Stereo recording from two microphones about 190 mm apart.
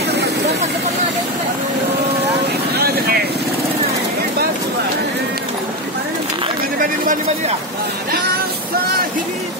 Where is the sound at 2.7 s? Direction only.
55° right (ahead or behind).